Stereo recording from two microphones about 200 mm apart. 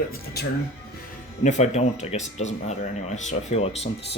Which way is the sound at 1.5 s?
35° left (ahead or behind).